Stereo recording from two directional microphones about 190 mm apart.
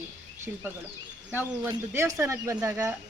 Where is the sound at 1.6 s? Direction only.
15° right (ahead or behind).